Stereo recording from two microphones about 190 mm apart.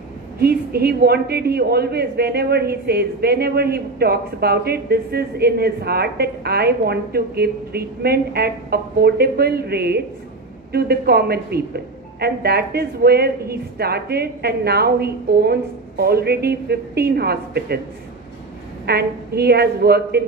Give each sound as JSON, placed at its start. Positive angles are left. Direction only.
{"t": 0.4, "sound": "a woman's voice", "side_deg": -55}
{"t": 18.9, "sound": "a woman's voice", "side_deg": -55}